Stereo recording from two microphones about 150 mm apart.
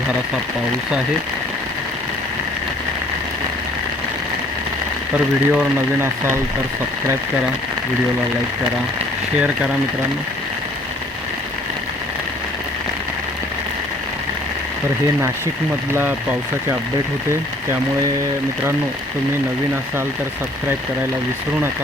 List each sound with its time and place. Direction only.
5.5 s speech: 15° right (ahead or behind)
15.9 s speech: 15° right (ahead or behind)